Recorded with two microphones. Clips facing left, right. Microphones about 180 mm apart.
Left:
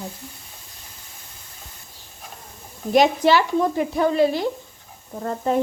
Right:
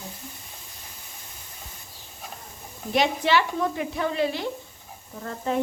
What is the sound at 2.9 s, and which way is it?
Speech, 40° left (ahead or behind).